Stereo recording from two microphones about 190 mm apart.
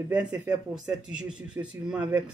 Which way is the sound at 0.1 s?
5° right (ahead or behind).